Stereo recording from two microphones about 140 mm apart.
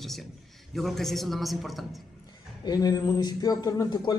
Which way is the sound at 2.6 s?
30° left (ahead or behind).